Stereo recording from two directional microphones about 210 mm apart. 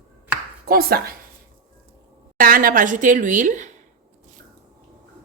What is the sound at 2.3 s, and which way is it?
A woman's voice, 40° right (ahead or behind).